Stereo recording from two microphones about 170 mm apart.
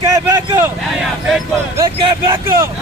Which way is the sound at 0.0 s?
20° right (ahead or behind).